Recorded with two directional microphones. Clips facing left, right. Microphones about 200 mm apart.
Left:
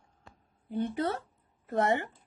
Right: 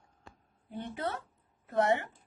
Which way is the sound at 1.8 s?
45° left (ahead or behind).